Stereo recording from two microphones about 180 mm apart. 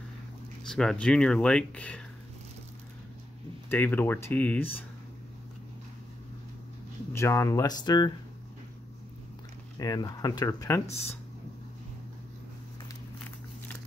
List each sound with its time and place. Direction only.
0.7 s speech: 5° left (ahead or behind)
3.6 s speech: 10° left (ahead or behind)
7.1 s speech: 15° left (ahead or behind)
9.8 s speech: 20° left (ahead or behind)